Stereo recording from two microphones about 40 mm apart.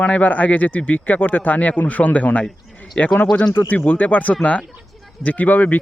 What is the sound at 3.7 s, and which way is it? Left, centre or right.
Speech, left.